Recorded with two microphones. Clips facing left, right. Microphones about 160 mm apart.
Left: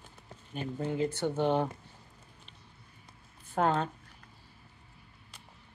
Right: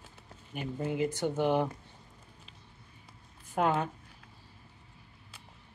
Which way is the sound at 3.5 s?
10° right (ahead or behind).